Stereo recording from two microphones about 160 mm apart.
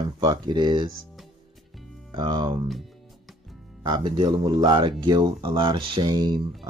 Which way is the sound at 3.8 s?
30° right (ahead or behind).